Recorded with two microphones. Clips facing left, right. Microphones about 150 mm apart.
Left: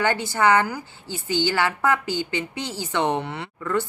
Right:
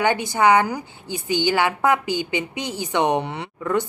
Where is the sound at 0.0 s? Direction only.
15° right (ahead or behind).